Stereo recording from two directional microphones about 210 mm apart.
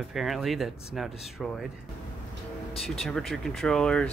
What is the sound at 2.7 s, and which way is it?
Speech, centre (ahead or behind).